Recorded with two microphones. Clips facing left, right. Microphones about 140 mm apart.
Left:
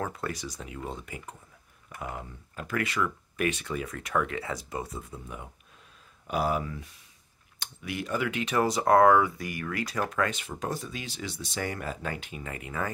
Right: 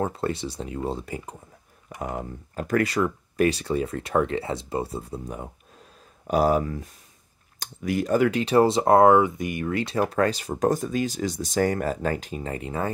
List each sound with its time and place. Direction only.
0.0 s speech: 30° right (ahead or behind)